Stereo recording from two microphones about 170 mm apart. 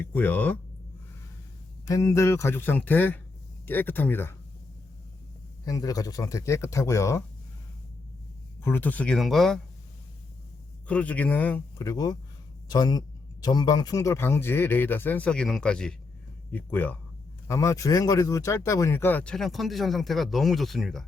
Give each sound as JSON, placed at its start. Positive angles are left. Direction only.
{"t": 0.0, "sound": "speech", "side_deg": 10}
{"t": 1.9, "sound": "speech", "side_deg": 20}
{"t": 5.6, "sound": "speech", "side_deg": 20}
{"t": 8.6, "sound": "speech", "side_deg": 10}
{"t": 10.8, "sound": "speech", "side_deg": 10}